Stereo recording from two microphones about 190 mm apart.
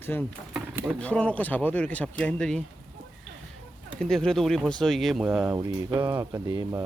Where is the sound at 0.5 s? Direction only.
10° right (ahead or behind).